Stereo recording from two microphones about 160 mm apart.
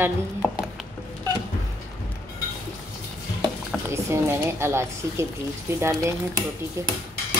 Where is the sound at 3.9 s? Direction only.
15° right (ahead or behind).